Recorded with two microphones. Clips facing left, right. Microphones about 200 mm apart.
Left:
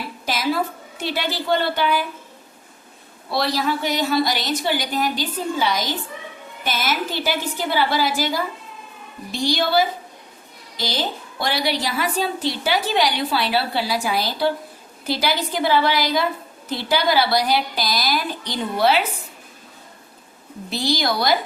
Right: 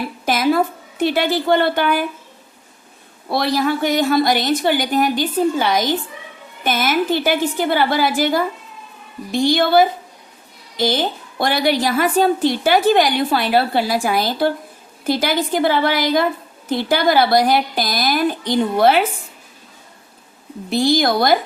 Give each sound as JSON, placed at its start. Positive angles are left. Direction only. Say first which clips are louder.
{"t": 0.3, "sound": "a woman's voice", "louder": "right 6 dB", "side_deg": -55}
{"t": 3.2, "sound": "a woman's voice", "louder": "right 4 dB", "side_deg": -50}
{"t": 20.7, "sound": "a woman's voice", "louder": "right 6 dB", "side_deg": -50}